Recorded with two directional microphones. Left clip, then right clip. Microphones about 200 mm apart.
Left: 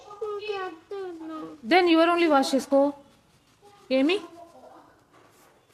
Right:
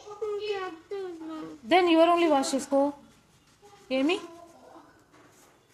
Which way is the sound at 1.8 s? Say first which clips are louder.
Left 1 dB; 50° left (ahead or behind).